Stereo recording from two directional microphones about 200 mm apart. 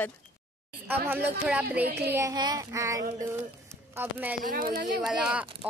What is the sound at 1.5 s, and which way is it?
Child singing, 10° right (ahead or behind).